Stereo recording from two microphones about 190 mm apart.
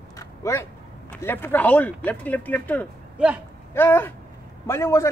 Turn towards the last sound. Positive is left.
turn(degrees=15)  # may be behind; listen again after turning